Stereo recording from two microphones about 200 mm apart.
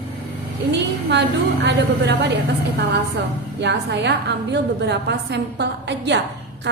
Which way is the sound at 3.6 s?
60° right (ahead or behind).